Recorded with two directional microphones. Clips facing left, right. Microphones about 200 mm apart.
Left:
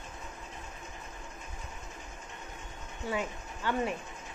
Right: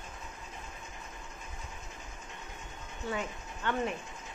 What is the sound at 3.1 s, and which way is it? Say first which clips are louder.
Speech: left 4 dB; 10° left (ahead or behind).